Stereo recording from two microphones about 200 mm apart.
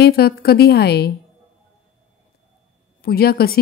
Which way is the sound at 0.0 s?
50° left (ahead or behind).